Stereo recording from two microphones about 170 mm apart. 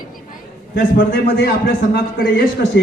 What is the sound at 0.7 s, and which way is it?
A man's voice, 65° left (ahead or behind).